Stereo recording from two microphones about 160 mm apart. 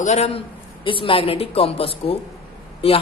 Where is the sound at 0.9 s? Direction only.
35° left (ahead or behind).